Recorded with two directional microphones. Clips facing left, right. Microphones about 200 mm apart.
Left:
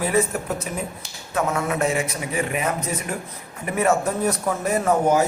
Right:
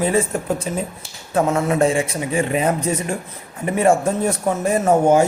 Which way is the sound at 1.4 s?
30° right (ahead or behind).